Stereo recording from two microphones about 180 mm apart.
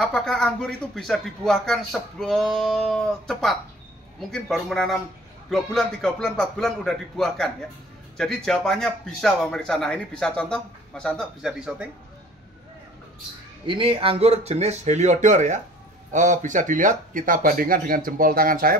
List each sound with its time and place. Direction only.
0.0 s speech: centre (ahead or behind)
13.7 s speech: 30° right (ahead or behind); by 18.8 s 50° right (ahead or behind)